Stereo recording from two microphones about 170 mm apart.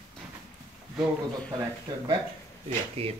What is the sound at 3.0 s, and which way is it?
Speech, 35° right (ahead or behind).